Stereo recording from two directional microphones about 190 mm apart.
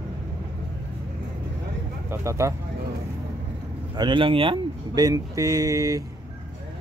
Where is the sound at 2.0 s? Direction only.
15° right (ahead or behind).